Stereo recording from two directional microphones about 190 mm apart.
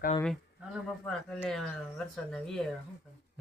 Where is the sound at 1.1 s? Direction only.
5° left (ahead or behind).